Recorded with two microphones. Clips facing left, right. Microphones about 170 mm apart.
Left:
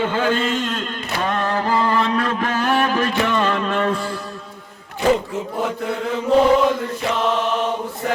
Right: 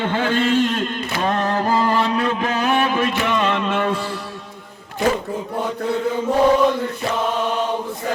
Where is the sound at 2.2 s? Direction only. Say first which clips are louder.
Right 1 dB; 5° right (ahead or behind).